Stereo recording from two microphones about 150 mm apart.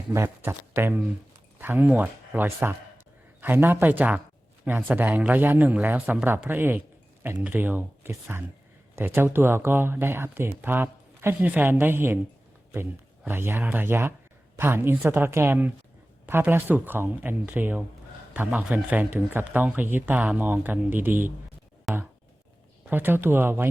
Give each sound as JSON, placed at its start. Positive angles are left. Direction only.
{"t": 0.1, "sound": "speech", "side_deg": -15}
{"t": 21.9, "sound": "speech", "side_deg": 0}
{"t": 22.9, "sound": "speech", "side_deg": -15}